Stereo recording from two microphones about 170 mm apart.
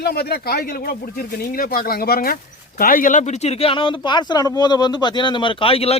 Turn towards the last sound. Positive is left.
turn(degrees=35)  # may be behind; listen again after turning